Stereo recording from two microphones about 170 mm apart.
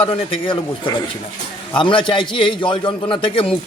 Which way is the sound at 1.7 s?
30° left (ahead or behind).